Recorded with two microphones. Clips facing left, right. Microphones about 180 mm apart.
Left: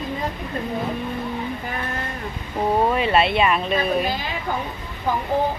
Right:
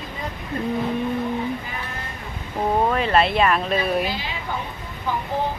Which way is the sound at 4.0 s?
45° left (ahead or behind).